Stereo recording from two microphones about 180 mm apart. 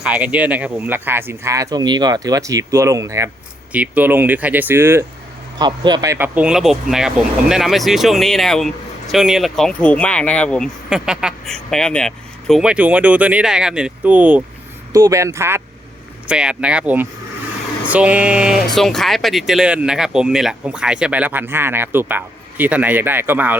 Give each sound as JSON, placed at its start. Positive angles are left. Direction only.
{"t": 0.0, "sound": "speech", "side_deg": -5}
{"t": 5.5, "sound": "speech", "side_deg": -25}
{"t": 14.9, "sound": "speech", "side_deg": -20}